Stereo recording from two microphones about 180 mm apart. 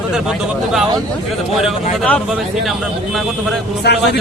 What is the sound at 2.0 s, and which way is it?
Speech, 5° left (ahead or behind).